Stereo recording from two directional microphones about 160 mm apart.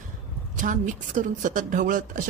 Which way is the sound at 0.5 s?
55° right (ahead or behind).